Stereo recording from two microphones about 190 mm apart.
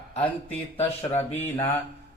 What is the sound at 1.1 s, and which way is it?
Mantra, 10° left (ahead or behind).